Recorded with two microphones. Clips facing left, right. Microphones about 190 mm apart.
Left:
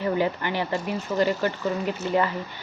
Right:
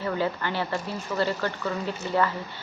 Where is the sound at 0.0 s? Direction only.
15° left (ahead or behind).